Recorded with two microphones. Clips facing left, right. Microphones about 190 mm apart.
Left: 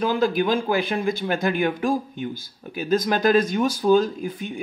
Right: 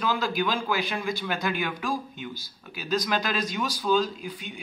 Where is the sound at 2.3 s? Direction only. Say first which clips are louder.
Left 7 dB; 50° left (ahead or behind).